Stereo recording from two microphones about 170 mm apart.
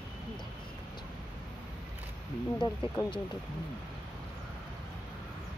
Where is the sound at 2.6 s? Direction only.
25° left (ahead or behind).